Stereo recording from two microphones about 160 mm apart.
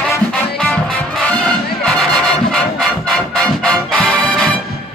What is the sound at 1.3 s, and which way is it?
Music, 5° left (ahead or behind).